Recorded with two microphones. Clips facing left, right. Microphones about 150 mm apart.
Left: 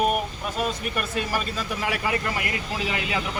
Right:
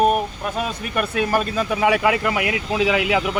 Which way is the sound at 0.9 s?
65° right (ahead or behind).